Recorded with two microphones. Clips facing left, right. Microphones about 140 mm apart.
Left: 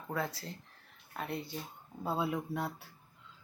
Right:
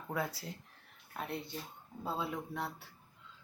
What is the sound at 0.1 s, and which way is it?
Speech, 10° right (ahead or behind).